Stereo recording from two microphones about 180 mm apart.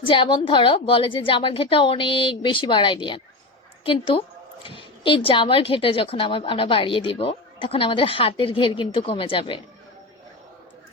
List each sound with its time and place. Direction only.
0.0 s a woman's voice: 30° left (ahead or behind)